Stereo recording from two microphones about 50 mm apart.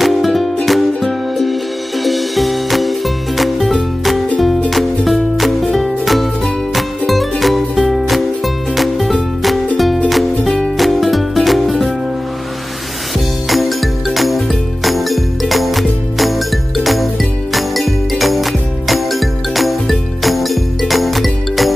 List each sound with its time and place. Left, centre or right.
0.0 s music: centre
13.5 s music: centre